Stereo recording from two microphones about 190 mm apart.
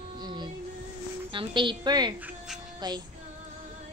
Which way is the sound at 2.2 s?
Centre (ahead or behind).